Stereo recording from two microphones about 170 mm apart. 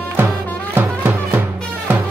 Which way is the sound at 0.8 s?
10° right (ahead or behind).